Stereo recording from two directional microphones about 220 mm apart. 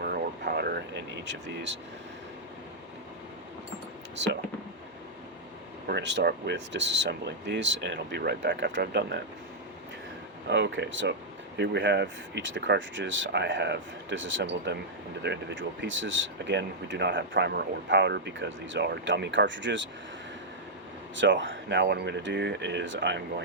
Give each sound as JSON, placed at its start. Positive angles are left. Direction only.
{"t": 0.0, "sound": "vehicle", "side_deg": -45}
{"t": 4.1, "sound": "speech", "side_deg": -55}
{"t": 5.9, "sound": "speech", "side_deg": -50}
{"t": 10.5, "sound": "speech", "side_deg": -50}
{"t": 21.2, "sound": "speech", "side_deg": -55}